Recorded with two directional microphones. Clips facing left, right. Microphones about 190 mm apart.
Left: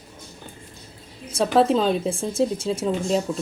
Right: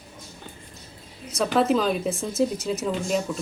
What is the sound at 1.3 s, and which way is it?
Speech, 30° left (ahead or behind).